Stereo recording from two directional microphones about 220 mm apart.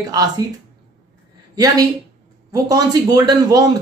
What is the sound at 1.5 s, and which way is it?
A man's voice, 15° right (ahead or behind).